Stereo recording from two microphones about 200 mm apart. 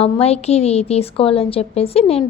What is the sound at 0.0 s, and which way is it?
A woman's voice, 30° left (ahead or behind).